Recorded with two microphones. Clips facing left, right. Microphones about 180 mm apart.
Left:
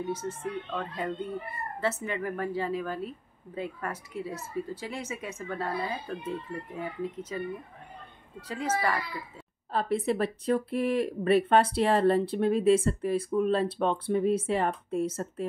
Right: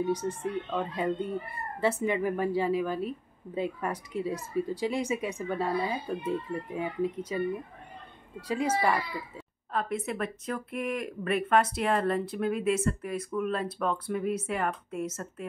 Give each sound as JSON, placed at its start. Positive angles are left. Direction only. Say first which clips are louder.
{"t": 0.1, "sound": "a woman's voice", "louder": "right 3 dB", "side_deg": -15}
{"t": 9.7, "sound": "speech", "louder": "left 4 dB", "side_deg": 30}